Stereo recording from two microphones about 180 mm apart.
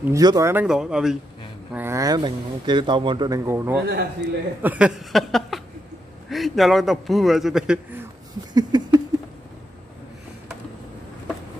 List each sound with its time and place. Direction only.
0.1 s speech: 20° right (ahead or behind)
3.8 s a man's voice: 70° right (ahead or behind)
4.6 s a man's voice: 10° right (ahead or behind)
8.5 s a sound: 25° right (ahead or behind)